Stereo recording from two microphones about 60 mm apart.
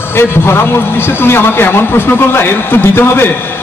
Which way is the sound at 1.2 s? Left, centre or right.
Left.